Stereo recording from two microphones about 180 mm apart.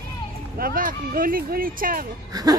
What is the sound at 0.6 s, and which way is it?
Speech, 55° right (ahead or behind).